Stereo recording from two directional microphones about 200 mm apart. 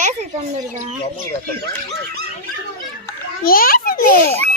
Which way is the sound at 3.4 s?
45° left (ahead or behind).